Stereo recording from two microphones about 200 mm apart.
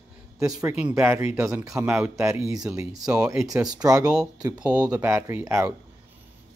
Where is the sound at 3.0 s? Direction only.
5° right (ahead or behind).